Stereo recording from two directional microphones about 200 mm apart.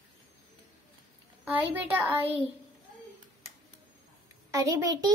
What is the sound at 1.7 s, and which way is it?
Speech, 10° right (ahead or behind).